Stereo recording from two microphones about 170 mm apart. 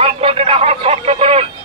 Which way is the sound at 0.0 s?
35° right (ahead or behind).